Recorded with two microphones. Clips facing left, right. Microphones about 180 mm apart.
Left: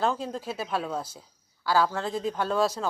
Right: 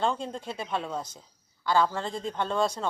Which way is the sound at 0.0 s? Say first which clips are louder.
Left 1 dB; 5° left (ahead or behind).